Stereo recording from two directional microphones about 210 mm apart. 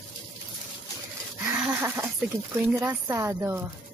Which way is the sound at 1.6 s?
10° right (ahead or behind).